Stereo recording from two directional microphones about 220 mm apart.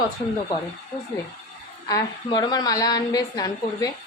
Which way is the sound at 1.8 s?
15° left (ahead or behind).